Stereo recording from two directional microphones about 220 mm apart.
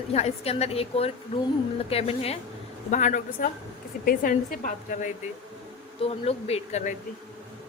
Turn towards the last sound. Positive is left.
turn(degrees=30)  # may be behind; listen again after turning